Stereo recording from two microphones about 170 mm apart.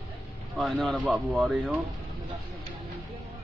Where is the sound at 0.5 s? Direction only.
Centre (ahead or behind).